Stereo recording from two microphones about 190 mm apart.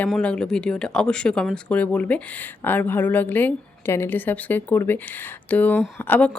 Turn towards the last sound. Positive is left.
turn(degrees=10)  # may be behind; listen again after turning